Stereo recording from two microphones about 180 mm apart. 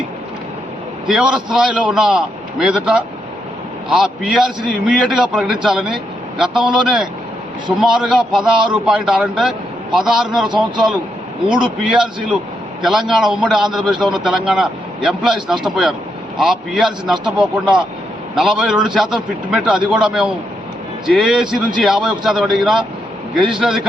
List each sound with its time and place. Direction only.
1.0 s a man's voice: 5° right (ahead or behind)
8.5 s a man's voice: 25° right (ahead or behind)
8.8 s a man's voice: 5° right (ahead or behind)
10.5 s a man's voice: 25° right (ahead or behind)
11.5 s a man's voice: 5° right (ahead or behind)